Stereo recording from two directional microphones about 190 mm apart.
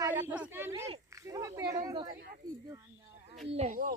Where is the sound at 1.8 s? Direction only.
20° right (ahead or behind).